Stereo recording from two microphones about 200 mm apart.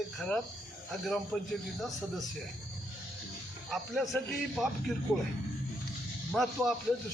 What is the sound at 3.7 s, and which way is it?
A man's voice, centre (ahead or behind).